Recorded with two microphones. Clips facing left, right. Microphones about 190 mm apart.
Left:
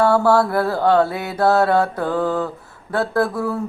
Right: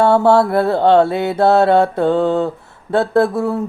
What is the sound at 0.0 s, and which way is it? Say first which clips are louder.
Speech: right 3 dB; 25° right (ahead or behind).